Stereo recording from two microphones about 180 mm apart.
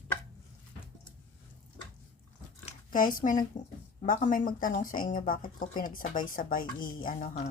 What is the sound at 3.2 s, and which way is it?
Speech, 45° left (ahead or behind).